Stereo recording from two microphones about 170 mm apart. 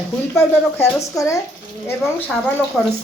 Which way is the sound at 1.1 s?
15° left (ahead or behind).